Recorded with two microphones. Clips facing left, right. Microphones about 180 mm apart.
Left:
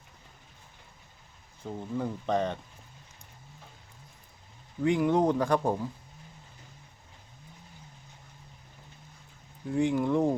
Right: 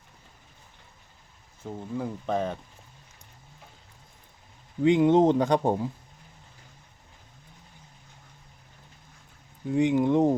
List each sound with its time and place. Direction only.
1.6 s speech: 5° right (ahead or behind)
4.8 s speech: 20° right (ahead or behind)
9.7 s speech: 20° right (ahead or behind)